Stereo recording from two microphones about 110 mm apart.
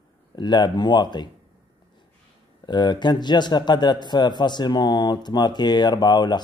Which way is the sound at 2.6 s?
45° left (ahead or behind).